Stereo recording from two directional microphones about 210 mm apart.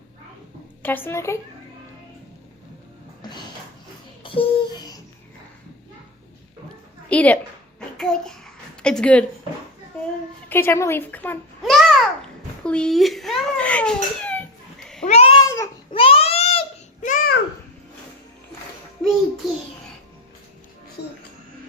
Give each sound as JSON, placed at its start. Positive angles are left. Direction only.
{"t": 0.8, "sound": "a woman's voice", "side_deg": 10}
{"t": 3.2, "sound": "music", "side_deg": 20}
{"t": 4.2, "sound": "a sound", "side_deg": 25}
{"t": 7.1, "sound": "a woman's voice", "side_deg": 5}
{"t": 10.5, "sound": "a child's voice", "side_deg": 10}
{"t": 15.0, "sound": "a sound", "side_deg": 30}
{"t": 21.0, "sound": "music", "side_deg": 50}